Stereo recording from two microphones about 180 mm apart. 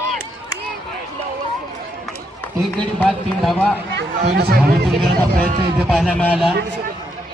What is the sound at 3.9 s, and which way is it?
Speech, 65° right (ahead or behind).